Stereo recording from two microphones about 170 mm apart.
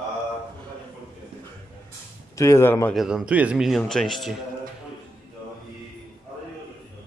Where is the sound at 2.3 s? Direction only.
15° left (ahead or behind).